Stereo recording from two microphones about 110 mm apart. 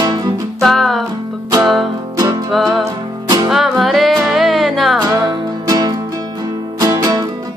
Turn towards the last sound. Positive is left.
turn(degrees=-35)  # may be behind; listen again after turning